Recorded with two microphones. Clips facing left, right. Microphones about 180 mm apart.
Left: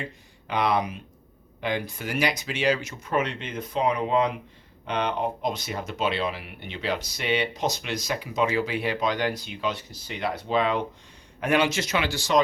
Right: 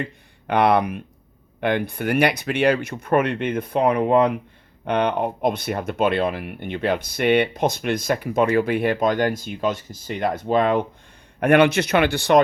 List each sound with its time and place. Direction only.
0.0 s speech: 60° right (ahead or behind)